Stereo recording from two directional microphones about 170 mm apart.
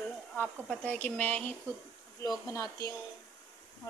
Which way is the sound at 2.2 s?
20° left (ahead or behind).